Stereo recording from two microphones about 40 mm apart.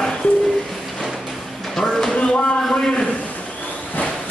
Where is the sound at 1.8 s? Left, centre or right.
Centre.